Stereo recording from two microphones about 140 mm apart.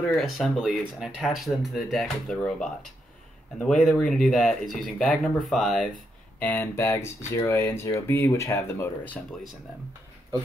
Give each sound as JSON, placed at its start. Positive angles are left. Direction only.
{"t": 0.2, "sound": "speech", "side_deg": 0}
{"t": 6.4, "sound": "speech", "side_deg": 15}